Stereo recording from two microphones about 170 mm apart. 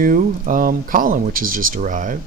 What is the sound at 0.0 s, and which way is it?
Speech, 55° right (ahead or behind).